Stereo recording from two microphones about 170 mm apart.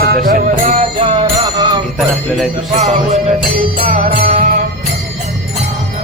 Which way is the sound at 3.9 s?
55° right (ahead or behind).